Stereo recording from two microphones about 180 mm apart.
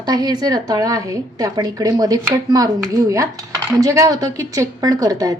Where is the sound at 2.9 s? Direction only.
20° right (ahead or behind).